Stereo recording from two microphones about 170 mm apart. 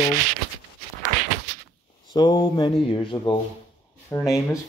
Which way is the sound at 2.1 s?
25° left (ahead or behind).